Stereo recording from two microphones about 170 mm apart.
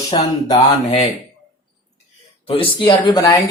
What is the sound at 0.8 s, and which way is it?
Speech, 40° left (ahead or behind).